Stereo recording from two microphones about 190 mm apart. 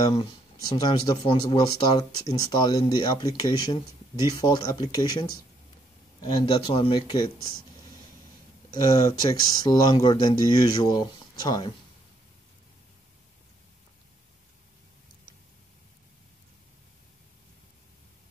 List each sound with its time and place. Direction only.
0.1 s speech: 25° left (ahead or behind)
6.2 s speech: 25° left (ahead or behind)
8.6 s speech: 20° left (ahead or behind)